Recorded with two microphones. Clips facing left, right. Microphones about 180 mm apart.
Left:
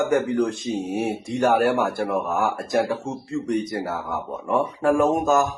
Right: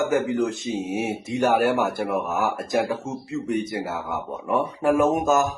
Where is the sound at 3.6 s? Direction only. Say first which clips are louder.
Left 1 dB; 25° right (ahead or behind).